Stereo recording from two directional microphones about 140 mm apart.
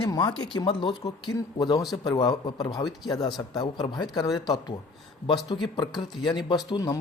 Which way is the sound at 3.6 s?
30° left (ahead or behind).